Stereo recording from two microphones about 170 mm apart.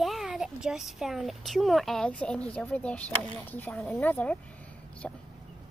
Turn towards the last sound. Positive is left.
turn(degrees=5)  # may be behind; listen again after turning